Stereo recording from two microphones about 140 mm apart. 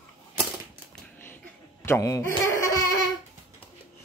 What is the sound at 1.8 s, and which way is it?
Baby laughter, 20° left (ahead or behind).